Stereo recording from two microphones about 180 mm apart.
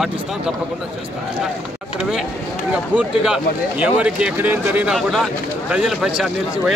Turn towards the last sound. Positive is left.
turn(degrees=0)  # may be behind; listen again after turning